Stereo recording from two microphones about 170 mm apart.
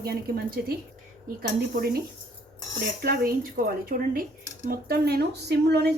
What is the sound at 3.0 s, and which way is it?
Speech, 65° right (ahead or behind).